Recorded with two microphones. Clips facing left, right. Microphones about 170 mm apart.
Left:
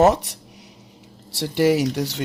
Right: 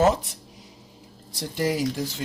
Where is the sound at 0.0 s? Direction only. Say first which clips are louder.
Left 4 dB; 70° left (ahead or behind).